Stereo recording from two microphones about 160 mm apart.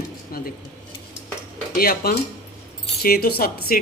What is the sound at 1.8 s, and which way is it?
Speech, 70° left (ahead or behind).